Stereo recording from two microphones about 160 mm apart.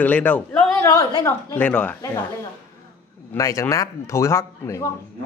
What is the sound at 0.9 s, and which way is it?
Speech, 20° left (ahead or behind).